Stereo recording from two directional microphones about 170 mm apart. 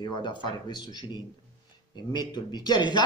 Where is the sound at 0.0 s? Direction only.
25° left (ahead or behind).